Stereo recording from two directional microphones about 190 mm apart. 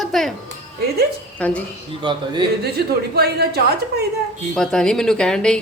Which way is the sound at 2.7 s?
55° right (ahead or behind).